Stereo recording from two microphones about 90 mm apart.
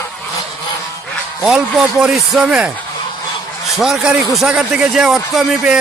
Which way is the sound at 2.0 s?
5° right (ahead or behind).